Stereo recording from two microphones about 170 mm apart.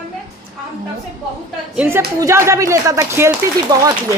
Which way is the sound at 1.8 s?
15° right (ahead or behind).